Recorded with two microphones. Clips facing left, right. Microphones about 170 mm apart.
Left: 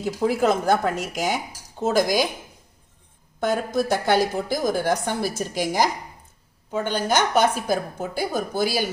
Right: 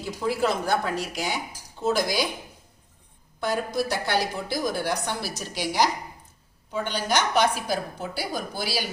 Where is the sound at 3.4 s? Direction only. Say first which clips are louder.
Left 4 dB; 50° left (ahead or behind).